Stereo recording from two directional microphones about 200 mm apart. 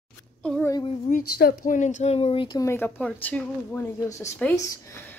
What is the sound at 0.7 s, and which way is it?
Speech, 30° left (ahead or behind).